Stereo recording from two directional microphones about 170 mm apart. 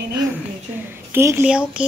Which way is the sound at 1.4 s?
5° right (ahead or behind).